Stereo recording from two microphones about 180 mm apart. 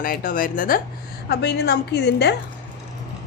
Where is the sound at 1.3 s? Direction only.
65° left (ahead or behind).